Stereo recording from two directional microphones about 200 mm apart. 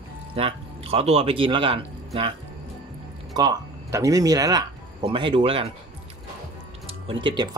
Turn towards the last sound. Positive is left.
turn(degrees=-25)  # may be behind; listen again after turning